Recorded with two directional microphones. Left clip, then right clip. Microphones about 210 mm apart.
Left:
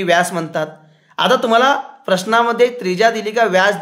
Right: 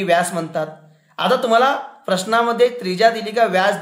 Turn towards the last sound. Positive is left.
turn(degrees=25)  # may be behind; listen again after turning